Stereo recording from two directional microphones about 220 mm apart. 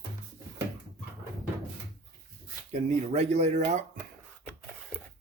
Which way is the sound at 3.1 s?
30° right (ahead or behind).